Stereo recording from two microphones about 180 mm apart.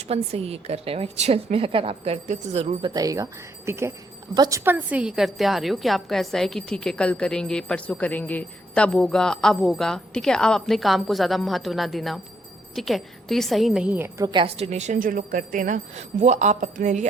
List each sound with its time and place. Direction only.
0.1 s a woman's voice: 35° right (ahead or behind)
2.9 s a woman's voice: 20° right (ahead or behind)
14.3 s a woman's voice: 30° right (ahead or behind)